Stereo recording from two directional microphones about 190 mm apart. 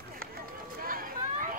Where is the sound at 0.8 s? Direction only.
45° right (ahead or behind).